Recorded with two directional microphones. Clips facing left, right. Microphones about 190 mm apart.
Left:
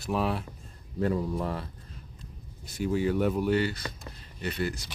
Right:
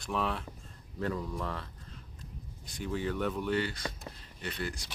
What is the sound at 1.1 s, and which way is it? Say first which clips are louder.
Speech: left 6 dB; 35° left (ahead or behind).